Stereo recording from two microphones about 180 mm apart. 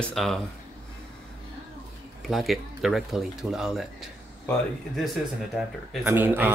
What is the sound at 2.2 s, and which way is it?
Speech, centre (ahead or behind).